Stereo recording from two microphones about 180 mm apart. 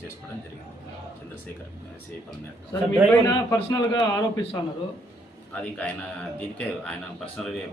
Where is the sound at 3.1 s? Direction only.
20° left (ahead or behind).